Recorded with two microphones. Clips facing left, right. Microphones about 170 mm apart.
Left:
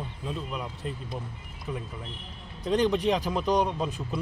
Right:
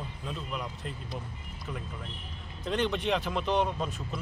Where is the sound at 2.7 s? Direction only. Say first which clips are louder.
Left 5 dB; 35° left (ahead or behind).